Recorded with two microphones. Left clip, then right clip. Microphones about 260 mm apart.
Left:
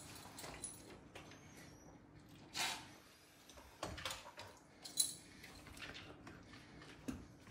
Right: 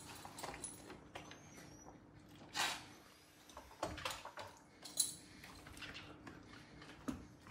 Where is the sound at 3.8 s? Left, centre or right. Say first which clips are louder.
Right 3 dB; centre.